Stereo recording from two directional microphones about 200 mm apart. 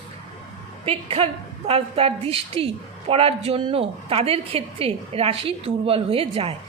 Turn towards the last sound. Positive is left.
turn(degrees=-30)  # may be behind; listen again after turning